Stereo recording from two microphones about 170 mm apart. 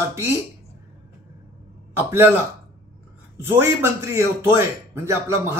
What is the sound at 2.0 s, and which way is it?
Speech, 15° right (ahead or behind).